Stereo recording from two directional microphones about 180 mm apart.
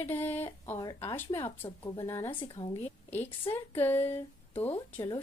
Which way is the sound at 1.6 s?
30° left (ahead or behind).